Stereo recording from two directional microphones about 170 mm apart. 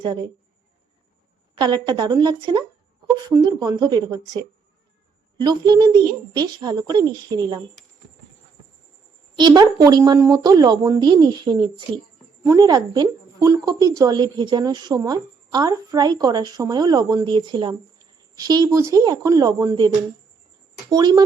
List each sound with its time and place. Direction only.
0.0 s a woman's voice: 25° right (ahead or behind)
1.5 s a woman's voice: 25° right (ahead or behind)
5.4 s a woman's voice: 25° right (ahead or behind)
9.4 s a woman's voice: 25° right (ahead or behind)
20.9 s a woman's voice: 25° right (ahead or behind)